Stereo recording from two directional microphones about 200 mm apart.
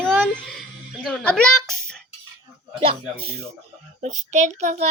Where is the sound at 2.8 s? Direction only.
30° right (ahead or behind).